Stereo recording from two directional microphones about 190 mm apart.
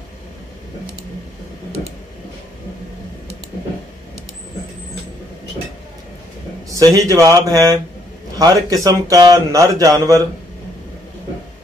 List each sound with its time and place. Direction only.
6.7 s a man's voice: 15° right (ahead or behind)